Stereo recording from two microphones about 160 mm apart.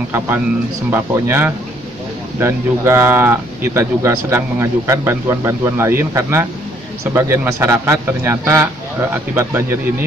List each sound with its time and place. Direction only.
0.8 s speech: 15° right (ahead or behind)